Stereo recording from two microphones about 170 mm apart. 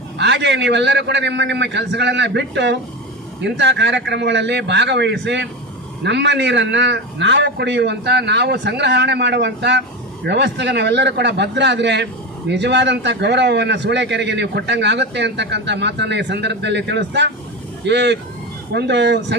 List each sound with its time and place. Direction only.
0.2 s a man's voice: 85° right